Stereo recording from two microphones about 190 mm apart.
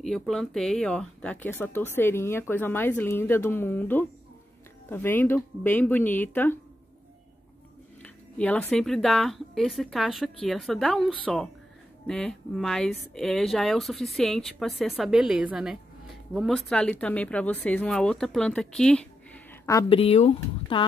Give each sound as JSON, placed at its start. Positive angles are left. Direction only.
{"t": 0.0, "sound": "speech", "side_deg": 0}
{"t": 8.0, "sound": "speech", "side_deg": 5}
{"t": 19.9, "sound": "speech", "side_deg": 30}